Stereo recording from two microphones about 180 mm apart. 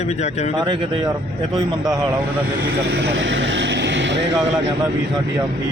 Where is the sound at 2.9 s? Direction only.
80° right.